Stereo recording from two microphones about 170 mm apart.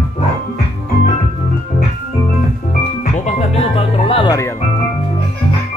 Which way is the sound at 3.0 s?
45° left (ahead or behind).